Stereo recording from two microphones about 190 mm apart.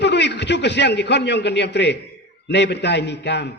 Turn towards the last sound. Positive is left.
turn(degrees=65)  # may be behind; listen again after turning